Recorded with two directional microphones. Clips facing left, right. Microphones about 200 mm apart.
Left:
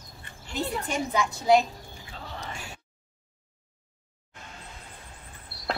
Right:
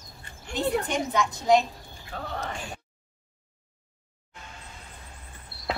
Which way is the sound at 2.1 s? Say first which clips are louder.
Right 6 dB; 60° right (ahead or behind).